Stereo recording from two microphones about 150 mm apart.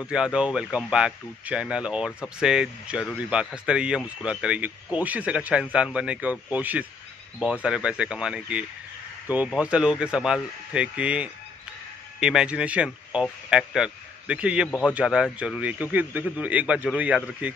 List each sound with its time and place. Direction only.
0.0 s speech: 5° right (ahead or behind)
14.7 s a man's voice: 5° left (ahead or behind)
15.0 s speech: 5° right (ahead or behind)